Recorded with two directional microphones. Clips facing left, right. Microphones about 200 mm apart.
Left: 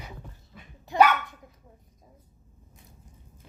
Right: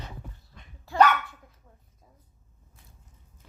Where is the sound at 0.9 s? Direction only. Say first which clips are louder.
Left 1 dB; 15° left (ahead or behind).